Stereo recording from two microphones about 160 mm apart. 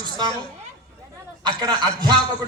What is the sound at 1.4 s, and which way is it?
Speech, 25° right (ahead or behind).